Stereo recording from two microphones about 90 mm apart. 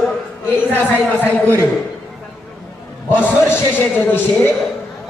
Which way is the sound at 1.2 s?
20° left (ahead or behind).